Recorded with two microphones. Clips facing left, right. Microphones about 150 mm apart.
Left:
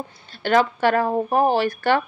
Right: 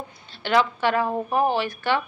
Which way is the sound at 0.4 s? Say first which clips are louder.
Left 3 dB; 45° left (ahead or behind).